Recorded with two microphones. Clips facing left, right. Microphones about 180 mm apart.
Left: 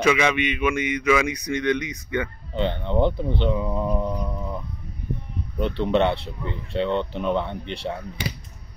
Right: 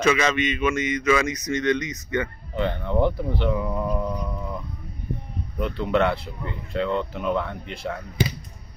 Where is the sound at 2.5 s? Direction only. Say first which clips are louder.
Left 1 dB; 25° left (ahead or behind).